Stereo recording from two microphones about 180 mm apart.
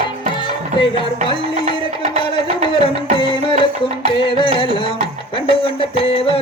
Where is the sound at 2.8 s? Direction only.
30° left (ahead or behind).